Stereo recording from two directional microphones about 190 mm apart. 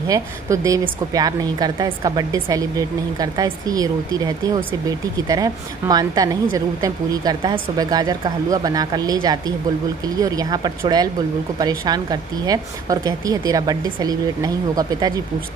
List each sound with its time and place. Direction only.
0.1 s a woman's voice: 15° right (ahead or behind)
5.3 s a woman's voice: 20° right (ahead or behind)